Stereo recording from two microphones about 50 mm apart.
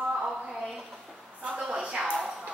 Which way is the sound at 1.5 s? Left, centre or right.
Centre.